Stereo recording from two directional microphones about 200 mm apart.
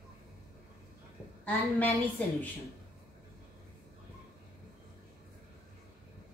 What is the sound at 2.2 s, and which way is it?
Speech, 5° left (ahead or behind).